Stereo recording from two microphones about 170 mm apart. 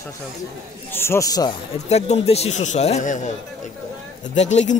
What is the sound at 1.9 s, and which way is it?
Speech, 40° left (ahead or behind).